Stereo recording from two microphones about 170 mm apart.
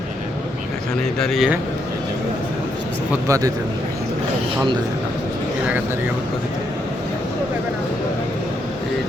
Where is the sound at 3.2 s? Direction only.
20° right (ahead or behind).